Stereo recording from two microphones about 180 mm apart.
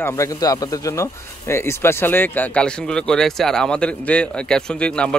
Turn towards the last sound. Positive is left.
turn(degrees=5)  # may be behind; listen again after turning